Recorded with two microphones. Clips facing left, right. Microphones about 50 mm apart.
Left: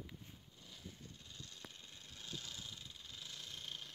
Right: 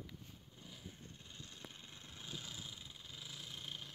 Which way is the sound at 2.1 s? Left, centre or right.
Centre.